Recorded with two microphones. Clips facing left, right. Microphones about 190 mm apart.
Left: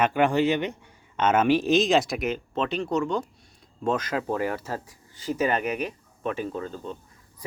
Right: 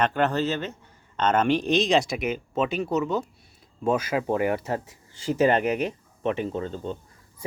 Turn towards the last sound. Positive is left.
turn(degrees=-30)  # may be behind; listen again after turning